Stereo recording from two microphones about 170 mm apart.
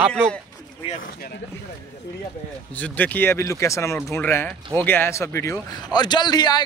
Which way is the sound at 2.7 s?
10° left (ahead or behind).